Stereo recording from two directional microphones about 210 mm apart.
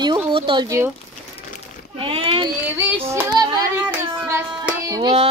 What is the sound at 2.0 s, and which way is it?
Speech, 25° right (ahead or behind).